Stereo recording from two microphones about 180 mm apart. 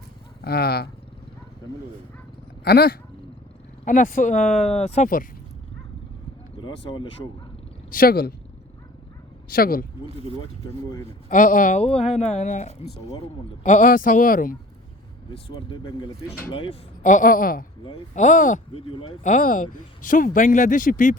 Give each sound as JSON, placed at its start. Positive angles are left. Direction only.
{"t": 0.4, "sound": "speech", "side_deg": 60}
{"t": 2.6, "sound": "speech", "side_deg": 60}
{"t": 3.8, "sound": "speech", "side_deg": 45}
{"t": 7.9, "sound": "speech", "side_deg": 55}
{"t": 9.5, "sound": "speech", "side_deg": 55}
{"t": 11.3, "sound": "speech", "side_deg": 45}
{"t": 15.7, "sound": "speech", "side_deg": 25}
{"t": 17.0, "sound": "speech", "side_deg": 45}
{"t": 18.1, "sound": "speech", "side_deg": 45}
{"t": 18.7, "sound": "speech", "side_deg": 30}
{"t": 19.2, "sound": "speech", "side_deg": 45}